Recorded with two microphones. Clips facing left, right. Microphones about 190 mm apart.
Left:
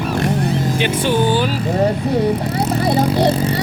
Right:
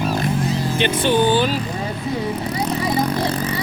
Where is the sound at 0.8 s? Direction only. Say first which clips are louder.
Right 2 dB; 10° left (ahead or behind).